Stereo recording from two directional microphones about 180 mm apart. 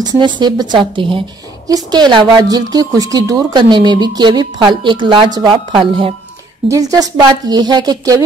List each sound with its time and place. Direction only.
0.0 s a woman's voice: 25° right (ahead or behind)